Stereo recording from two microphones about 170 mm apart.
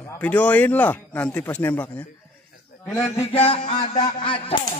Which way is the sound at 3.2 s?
35° left (ahead or behind).